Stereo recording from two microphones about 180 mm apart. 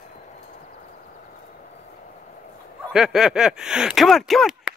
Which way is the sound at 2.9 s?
5° right (ahead or behind).